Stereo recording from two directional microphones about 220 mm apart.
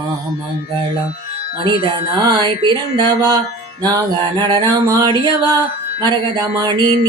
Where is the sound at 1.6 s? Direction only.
25° right (ahead or behind).